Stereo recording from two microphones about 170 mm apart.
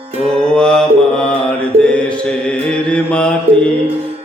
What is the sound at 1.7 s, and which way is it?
Mantra, 40° right (ahead or behind).